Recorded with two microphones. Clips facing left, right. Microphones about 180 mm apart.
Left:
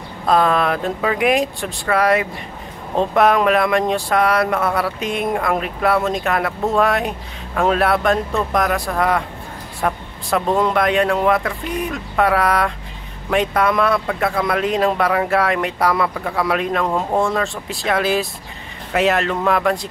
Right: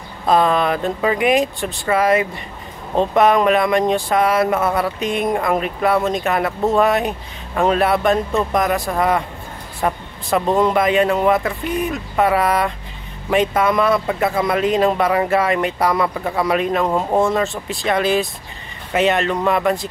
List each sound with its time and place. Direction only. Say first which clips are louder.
0.3 s speech: right 1 dB; centre (ahead or behind)